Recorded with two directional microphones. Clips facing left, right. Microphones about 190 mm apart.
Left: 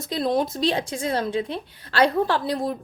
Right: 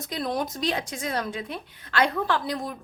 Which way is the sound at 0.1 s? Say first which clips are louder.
Left 6 dB; 25° left (ahead or behind).